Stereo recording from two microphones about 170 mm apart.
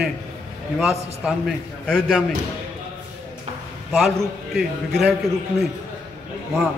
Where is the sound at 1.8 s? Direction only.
5° left (ahead or behind).